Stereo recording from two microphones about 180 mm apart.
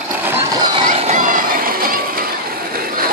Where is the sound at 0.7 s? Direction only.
30° right (ahead or behind); by 2.2 s 55° right (ahead or behind).